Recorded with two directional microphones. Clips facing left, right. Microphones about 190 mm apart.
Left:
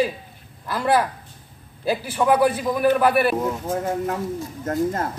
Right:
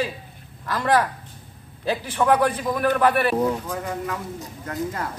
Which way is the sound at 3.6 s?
45° left (ahead or behind).